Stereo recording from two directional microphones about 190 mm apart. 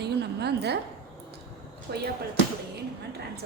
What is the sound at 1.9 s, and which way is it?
Speech, 60° right (ahead or behind).